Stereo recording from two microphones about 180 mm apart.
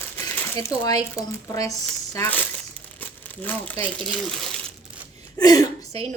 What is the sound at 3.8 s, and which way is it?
Speech, 5° left (ahead or behind).